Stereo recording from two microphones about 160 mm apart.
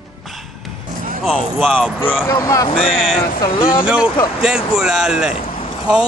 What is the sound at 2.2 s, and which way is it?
Speech, 20° left (ahead or behind).